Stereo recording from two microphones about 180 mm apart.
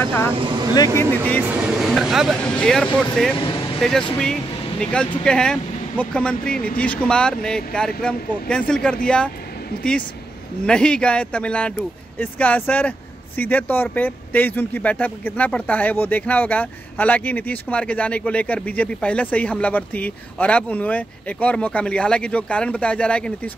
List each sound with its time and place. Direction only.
0.0 s speech: 10° left (ahead or behind)
1.4 s speech: 5° right (ahead or behind)
3.3 s a sound: 30° left (ahead or behind)
4.2 s speech: 5° left (ahead or behind)
10.7 s speech: 5° left (ahead or behind)